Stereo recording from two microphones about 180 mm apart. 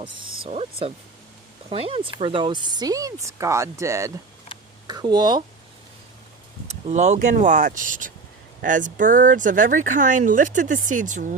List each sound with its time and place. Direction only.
0.0 s speech: 25° right (ahead or behind)
6.7 s speech: 40° right (ahead or behind)